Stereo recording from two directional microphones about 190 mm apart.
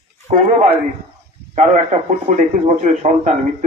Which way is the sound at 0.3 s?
40° right (ahead or behind).